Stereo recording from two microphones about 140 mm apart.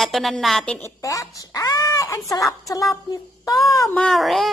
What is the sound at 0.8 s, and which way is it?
Speech, 20° left (ahead or behind).